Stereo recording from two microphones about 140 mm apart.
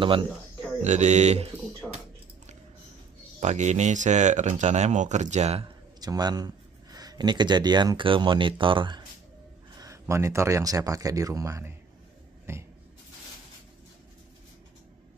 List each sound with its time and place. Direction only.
0.0 s speech: 35° right (ahead or behind)
0.8 s speech: 55° right (ahead or behind)
1.8 s a sound: centre (ahead or behind)
3.3 s speech: 55° right (ahead or behind)
5.9 s speech: 30° right (ahead or behind)
9.8 s speech: 20° right (ahead or behind)